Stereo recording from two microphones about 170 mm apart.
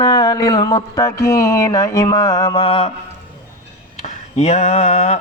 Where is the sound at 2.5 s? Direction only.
35° left (ahead or behind).